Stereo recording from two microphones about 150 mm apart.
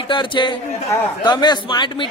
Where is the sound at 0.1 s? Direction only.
30° left (ahead or behind).